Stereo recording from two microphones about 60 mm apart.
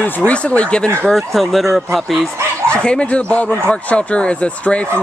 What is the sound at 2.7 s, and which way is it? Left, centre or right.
Speech, centre.